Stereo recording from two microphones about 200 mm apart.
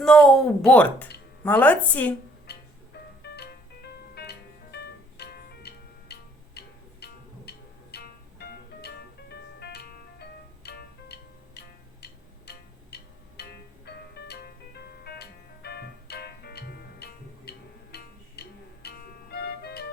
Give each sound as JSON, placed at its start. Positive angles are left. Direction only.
{"t": 0.0, "sound": "a woman's voice", "side_deg": 5}
{"t": 2.5, "sound": "music", "side_deg": 55}